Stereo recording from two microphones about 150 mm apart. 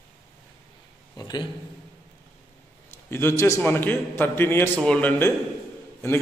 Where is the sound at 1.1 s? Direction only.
25° left (ahead or behind).